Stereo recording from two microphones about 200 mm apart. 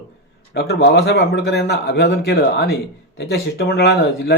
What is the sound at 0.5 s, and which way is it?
Speech, 55° left (ahead or behind).